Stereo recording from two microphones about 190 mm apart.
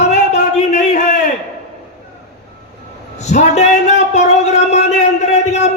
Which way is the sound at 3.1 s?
35° left (ahead or behind).